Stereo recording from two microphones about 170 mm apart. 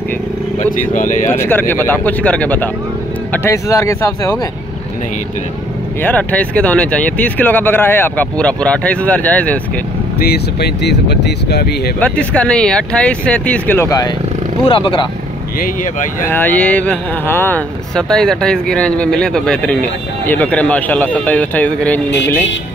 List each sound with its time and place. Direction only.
0.6 s speech: 50° left (ahead or behind)
1.3 s speech: 10° left (ahead or behind)
6.0 s speech: 10° left (ahead or behind)
10.1 s speech: 65° left (ahead or behind)
12.0 s speech: 10° left (ahead or behind)
14.6 s speech: 30° left (ahead or behind)
15.6 s speech: 55° left (ahead or behind)
16.3 s speech: 10° left (ahead or behind)